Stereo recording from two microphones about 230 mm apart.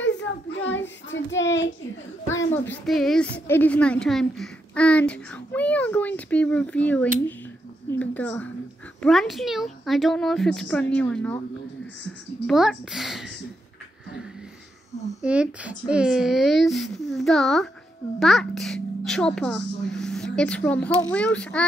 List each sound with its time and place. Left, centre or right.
0.0 s child singing: left
2.7 s a woman's voice: centre
12.4 s a woman's voice: centre
15.2 s a woman's voice: centre